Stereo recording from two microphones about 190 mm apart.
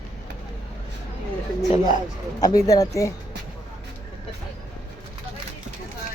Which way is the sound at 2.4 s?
20° left (ahead or behind).